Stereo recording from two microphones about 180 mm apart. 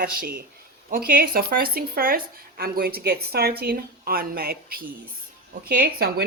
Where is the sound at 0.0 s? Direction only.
55° right (ahead or behind).